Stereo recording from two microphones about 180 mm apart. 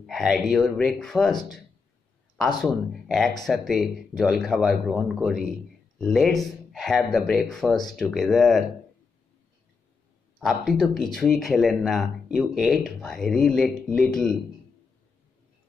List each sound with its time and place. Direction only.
0.0 s speech: centre (ahead or behind)
2.6 s speech: centre (ahead or behind)
10.4 s speech: centre (ahead or behind)